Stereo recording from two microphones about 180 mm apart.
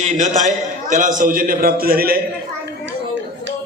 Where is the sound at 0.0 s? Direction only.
40° right (ahead or behind); by 2.2 s 55° right (ahead or behind).